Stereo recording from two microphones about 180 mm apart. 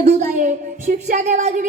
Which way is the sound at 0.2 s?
45° right (ahead or behind).